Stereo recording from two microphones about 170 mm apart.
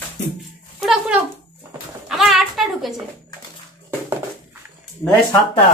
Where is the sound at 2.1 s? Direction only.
Centre (ahead or behind).